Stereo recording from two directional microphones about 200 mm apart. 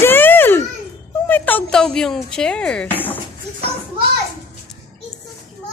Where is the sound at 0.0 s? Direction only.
10° left (ahead or behind).